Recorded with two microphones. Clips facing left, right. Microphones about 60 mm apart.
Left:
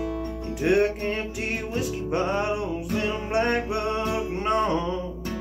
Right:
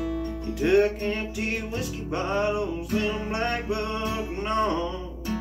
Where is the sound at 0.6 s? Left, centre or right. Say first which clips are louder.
Right 1 dB; centre.